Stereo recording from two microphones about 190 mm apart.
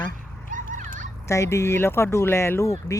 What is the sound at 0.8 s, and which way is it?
Children playing, 40° right (ahead or behind).